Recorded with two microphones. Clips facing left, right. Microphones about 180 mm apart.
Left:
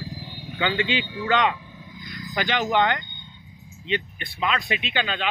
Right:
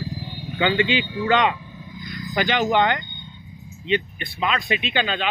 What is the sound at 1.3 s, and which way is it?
Speech, 15° right (ahead or behind).